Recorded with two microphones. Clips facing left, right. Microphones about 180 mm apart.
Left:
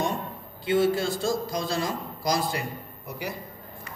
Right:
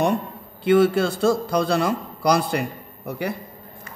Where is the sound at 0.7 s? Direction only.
65° right (ahead or behind).